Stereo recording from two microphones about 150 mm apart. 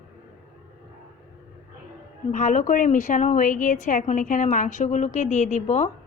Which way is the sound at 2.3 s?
55° left (ahead or behind).